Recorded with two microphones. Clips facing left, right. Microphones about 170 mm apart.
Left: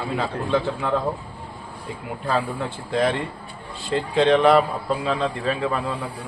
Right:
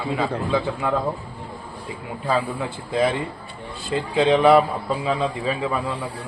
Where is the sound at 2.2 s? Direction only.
5° right (ahead or behind).